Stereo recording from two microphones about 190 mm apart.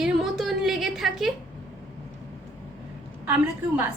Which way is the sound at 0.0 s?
Centre (ahead or behind).